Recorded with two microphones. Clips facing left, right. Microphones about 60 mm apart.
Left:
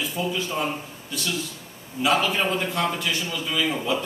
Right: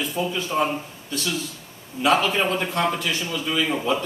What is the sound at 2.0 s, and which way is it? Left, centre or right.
A man's voice, centre.